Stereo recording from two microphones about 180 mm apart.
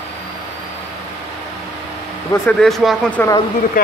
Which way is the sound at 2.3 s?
5° left (ahead or behind).